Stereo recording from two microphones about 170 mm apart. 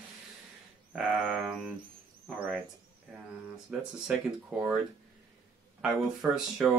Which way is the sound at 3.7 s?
5° right (ahead or behind).